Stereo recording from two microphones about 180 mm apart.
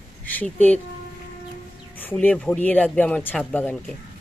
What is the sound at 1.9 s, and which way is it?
A woman's voice, 10° left (ahead or behind).